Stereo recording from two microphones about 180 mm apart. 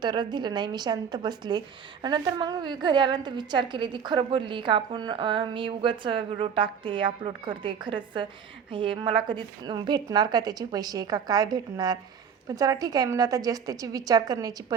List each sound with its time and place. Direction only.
0.0 s a woman's voice: 25° right (ahead or behind)